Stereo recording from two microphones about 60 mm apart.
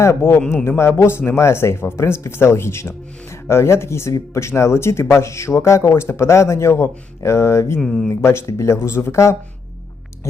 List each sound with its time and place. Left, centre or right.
0.2 s a man's voice: left
7.8 s speech: centre
8.1 s speech: left